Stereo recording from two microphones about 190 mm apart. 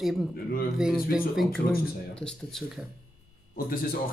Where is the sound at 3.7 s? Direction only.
50° left (ahead or behind).